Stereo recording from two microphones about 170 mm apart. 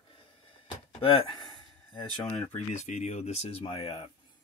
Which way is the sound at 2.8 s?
45° left (ahead or behind).